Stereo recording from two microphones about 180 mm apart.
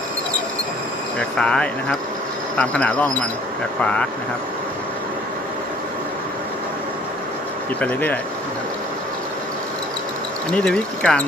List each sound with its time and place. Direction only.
1.4 s speech: 5° left (ahead or behind)
7.8 s speech: 10° left (ahead or behind)
10.5 s speech: 5° left (ahead or behind)